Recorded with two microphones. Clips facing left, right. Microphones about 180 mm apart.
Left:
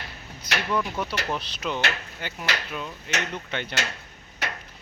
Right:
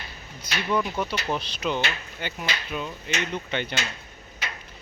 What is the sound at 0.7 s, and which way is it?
Speech, centre (ahead or behind).